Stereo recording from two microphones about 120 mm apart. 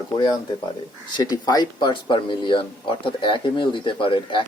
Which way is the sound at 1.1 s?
35° left (ahead or behind).